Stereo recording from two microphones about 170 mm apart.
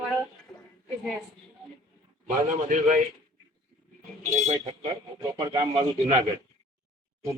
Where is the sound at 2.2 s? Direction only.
50° right (ahead or behind).